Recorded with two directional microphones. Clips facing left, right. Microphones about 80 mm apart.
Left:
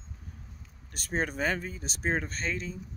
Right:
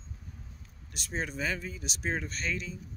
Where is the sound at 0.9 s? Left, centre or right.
Left.